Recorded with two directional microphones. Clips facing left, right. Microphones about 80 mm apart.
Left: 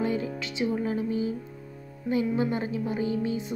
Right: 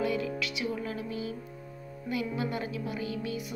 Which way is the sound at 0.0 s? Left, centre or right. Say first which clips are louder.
Left 2 dB; left.